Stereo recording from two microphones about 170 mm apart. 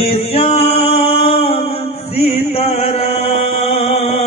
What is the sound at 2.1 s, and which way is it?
Chant, 35° left (ahead or behind).